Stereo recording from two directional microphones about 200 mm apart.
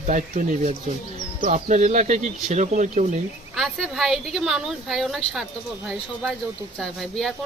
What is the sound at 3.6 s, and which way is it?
Speech, centre (ahead or behind).